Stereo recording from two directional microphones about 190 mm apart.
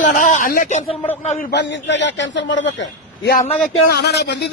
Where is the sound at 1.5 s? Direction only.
65° left (ahead or behind).